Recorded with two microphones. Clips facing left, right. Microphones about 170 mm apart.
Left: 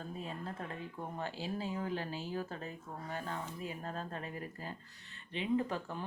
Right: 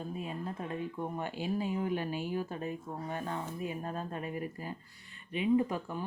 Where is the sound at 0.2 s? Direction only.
10° right (ahead or behind).